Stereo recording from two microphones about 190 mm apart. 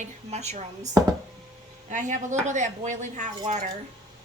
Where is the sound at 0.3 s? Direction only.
35° right (ahead or behind).